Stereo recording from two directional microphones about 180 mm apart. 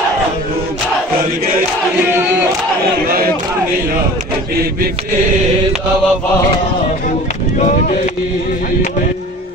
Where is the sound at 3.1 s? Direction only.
55° right (ahead or behind).